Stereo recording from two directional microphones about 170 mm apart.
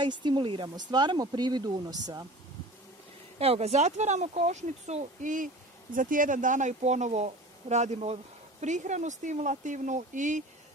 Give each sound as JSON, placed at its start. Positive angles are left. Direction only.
{"t": 0.0, "sound": "speech", "side_deg": -25}
{"t": 3.3, "sound": "speech", "side_deg": -35}